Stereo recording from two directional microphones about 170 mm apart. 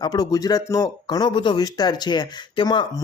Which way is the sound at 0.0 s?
25° left (ahead or behind).